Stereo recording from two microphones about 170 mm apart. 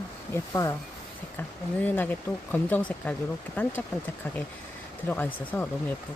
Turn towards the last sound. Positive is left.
turn(degrees=10)  # may be behind; listen again after turning